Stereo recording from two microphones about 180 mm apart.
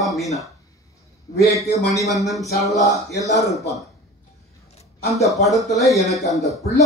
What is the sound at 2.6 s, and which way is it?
Speech, 20° left (ahead or behind).